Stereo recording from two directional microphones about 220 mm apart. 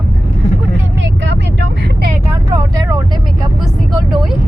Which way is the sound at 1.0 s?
55° right (ahead or behind).